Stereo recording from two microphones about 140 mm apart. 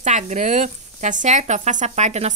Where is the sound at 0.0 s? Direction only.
60° right (ahead or behind).